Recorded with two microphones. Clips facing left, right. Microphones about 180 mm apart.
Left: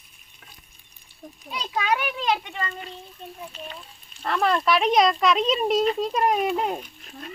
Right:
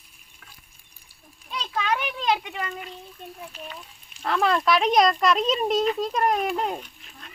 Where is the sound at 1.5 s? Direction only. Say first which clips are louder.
Left 1 dB; 10° left (ahead or behind).